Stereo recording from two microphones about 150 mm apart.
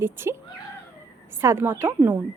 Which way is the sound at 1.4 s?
15° right (ahead or behind).